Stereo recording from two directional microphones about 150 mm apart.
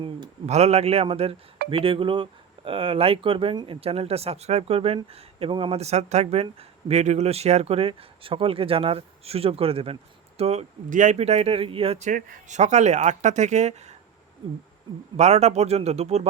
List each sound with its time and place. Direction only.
0.4 s speech: 45° right (ahead or behind)
15.1 s speech: 45° right (ahead or behind)